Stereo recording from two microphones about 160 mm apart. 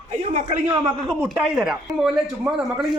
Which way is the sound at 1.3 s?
5° right (ahead or behind).